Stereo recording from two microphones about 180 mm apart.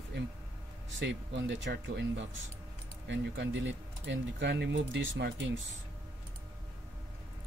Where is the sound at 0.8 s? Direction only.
90° right.